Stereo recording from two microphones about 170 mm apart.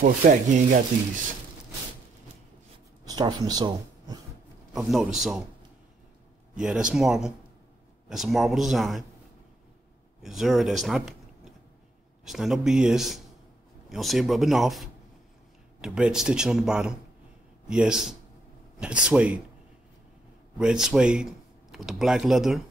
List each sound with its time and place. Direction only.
0.0 s speech: 50° right (ahead or behind)
3.1 s speech: 25° right (ahead or behind)
4.7 s speech: centre (ahead or behind)
6.5 s speech: 5° right (ahead or behind)
10.2 s speech: centre (ahead or behind)
20.5 s speech: 5° right (ahead or behind)